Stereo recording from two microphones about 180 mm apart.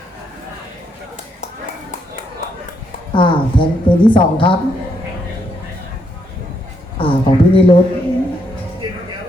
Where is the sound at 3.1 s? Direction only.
25° left (ahead or behind).